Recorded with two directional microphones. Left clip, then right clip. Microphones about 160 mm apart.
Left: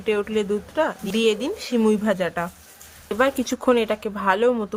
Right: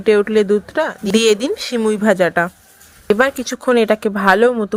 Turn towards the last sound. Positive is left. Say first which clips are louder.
# right 7 dB
turn(degrees=-40)  # may be behind; listen again after turning